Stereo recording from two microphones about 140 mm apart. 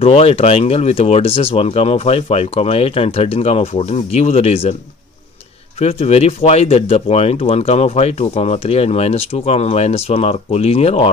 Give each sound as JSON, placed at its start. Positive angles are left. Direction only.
{"t": 0.0, "sound": "speech", "side_deg": 45}
{"t": 5.8, "sound": "speech", "side_deg": 50}